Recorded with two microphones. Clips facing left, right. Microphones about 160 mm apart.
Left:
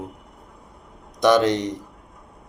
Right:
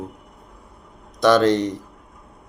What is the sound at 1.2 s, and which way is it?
Speech, 15° left (ahead or behind).